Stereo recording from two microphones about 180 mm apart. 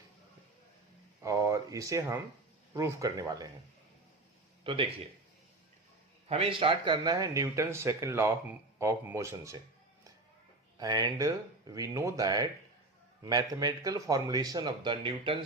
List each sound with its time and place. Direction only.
1.2 s a sound: 15° right (ahead or behind)
2.7 s speech: 20° right (ahead or behind)
4.6 s speech: 30° right (ahead or behind)
6.2 s speech: 35° right (ahead or behind); by 9.6 s 15° right (ahead or behind)
10.8 s speech: 20° right (ahead or behind)